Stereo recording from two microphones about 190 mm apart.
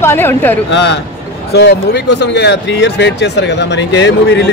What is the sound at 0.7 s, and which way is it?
A man's voice, 70° left (ahead or behind).